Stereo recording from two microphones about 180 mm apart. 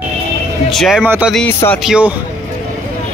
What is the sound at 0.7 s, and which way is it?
Speech, centre (ahead or behind).